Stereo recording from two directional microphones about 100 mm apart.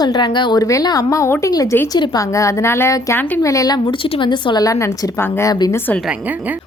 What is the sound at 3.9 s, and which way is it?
A woman's voice, 55° left (ahead or behind).